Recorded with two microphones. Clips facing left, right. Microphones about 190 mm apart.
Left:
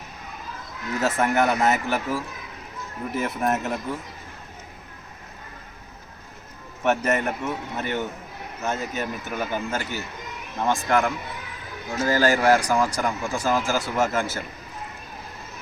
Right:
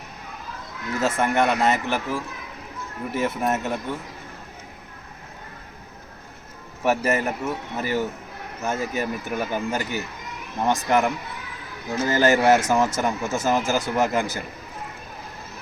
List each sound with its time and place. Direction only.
0.9 s speech: centre (ahead or behind)
6.8 s speech: 5° right (ahead or behind)